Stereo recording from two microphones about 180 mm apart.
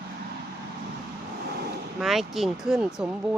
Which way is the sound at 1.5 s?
60° right (ahead or behind).